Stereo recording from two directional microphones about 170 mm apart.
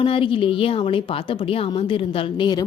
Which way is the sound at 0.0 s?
30° left (ahead or behind).